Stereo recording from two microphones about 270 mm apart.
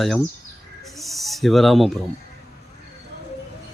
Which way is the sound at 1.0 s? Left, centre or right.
Centre.